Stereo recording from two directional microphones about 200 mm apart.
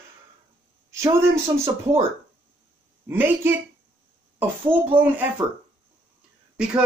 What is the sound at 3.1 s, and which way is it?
Speech, 10° right (ahead or behind).